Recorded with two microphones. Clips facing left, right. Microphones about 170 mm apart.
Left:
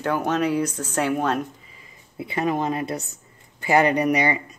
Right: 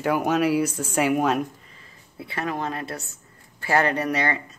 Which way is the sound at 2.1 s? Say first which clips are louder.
Left 5 dB; 20° left (ahead or behind).